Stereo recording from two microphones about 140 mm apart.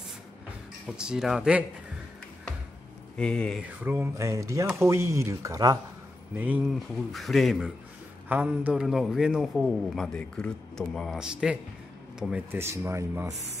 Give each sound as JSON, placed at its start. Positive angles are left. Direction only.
{"t": 0.9, "sound": "a man's voice", "side_deg": -5}
{"t": 3.2, "sound": "speech", "side_deg": 5}
{"t": 3.8, "sound": "speech", "side_deg": -15}
{"t": 6.3, "sound": "speech", "side_deg": -10}
{"t": 7.1, "sound": "a man's voice", "side_deg": 0}